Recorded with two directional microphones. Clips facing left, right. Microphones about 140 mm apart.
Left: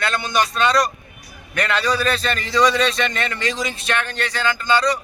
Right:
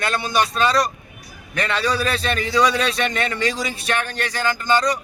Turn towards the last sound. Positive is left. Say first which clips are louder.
# even
turn(degrees=-15)  # may be behind; listen again after turning